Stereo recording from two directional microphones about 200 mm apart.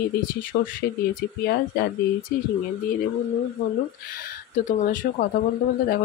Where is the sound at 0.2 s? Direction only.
45° left (ahead or behind).